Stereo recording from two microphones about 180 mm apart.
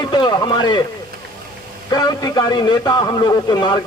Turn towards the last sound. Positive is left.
turn(degrees=25)  # may be behind; listen again after turning